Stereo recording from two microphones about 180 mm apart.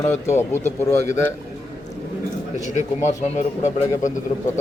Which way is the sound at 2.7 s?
40° left (ahead or behind).